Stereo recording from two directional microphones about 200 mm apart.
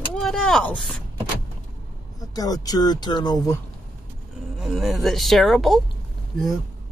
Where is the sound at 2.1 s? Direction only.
20° left (ahead or behind).